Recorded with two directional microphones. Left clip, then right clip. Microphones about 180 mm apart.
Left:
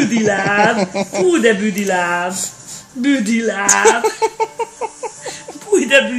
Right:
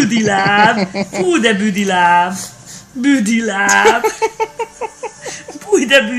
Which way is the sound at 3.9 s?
Centre (ahead or behind).